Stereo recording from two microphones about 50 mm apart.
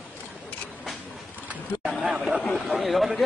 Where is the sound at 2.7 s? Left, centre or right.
Centre.